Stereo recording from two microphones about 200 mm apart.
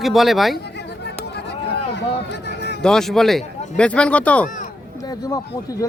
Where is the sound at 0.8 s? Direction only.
60° left (ahead or behind).